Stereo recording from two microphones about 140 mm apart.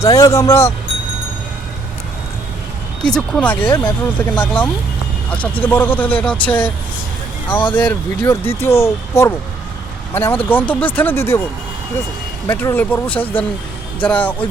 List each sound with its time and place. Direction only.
0.0 s speech: 25° left (ahead or behind)
3.1 s speech: 5° left (ahead or behind)
7.7 s speech: 10° left (ahead or behind)
12.5 s speech: 15° left (ahead or behind)